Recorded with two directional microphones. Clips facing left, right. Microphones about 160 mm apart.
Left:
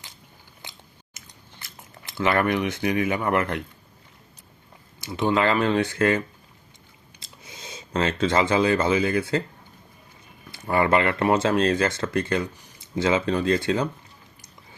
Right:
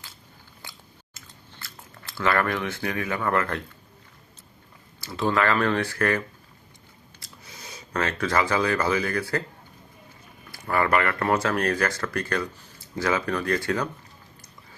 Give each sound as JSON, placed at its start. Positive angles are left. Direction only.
{"t": 0.6, "sound": "chewing", "side_deg": 20}
{"t": 4.9, "sound": "speech", "side_deg": 20}
{"t": 10.5, "sound": "speech", "side_deg": 20}